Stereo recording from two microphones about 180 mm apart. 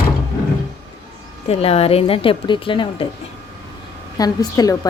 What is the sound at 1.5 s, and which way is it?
Speech, 35° left (ahead or behind).